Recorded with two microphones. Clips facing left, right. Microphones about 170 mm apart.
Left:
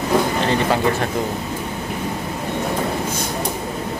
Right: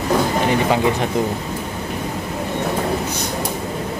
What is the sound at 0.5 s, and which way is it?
Speech, 15° right (ahead or behind).